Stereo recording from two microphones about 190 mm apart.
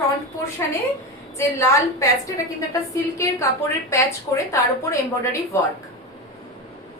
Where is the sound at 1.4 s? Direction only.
15° left (ahead or behind).